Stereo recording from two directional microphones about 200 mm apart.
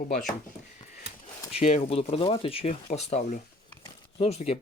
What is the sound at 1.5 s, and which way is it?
Speech, 30° left (ahead or behind).